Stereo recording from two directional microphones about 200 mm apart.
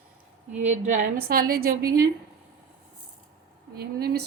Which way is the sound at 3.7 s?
50° right (ahead or behind).